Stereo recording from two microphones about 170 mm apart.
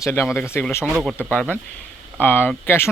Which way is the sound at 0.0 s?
15° left (ahead or behind).